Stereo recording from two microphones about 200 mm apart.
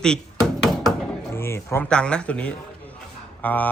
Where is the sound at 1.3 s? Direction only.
10° left (ahead or behind).